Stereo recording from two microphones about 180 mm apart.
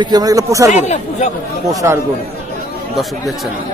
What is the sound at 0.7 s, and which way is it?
Speech, 40° left (ahead or behind).